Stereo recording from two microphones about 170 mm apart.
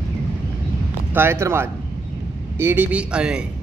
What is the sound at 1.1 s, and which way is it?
A man's voice, 15° right (ahead or behind).